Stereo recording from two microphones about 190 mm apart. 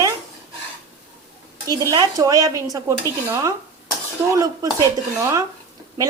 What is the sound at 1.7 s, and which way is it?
A woman's voice, 20° right (ahead or behind).